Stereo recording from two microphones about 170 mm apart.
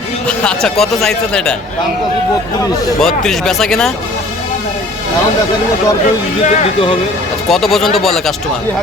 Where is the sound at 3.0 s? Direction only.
Centre (ahead or behind).